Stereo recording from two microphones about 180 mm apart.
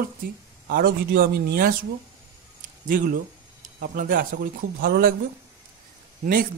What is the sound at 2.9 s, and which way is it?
Speech, 50° right (ahead or behind).